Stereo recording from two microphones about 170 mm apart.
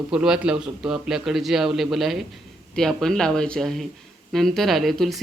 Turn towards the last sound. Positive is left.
turn(degrees=0)  # may be behind; listen again after turning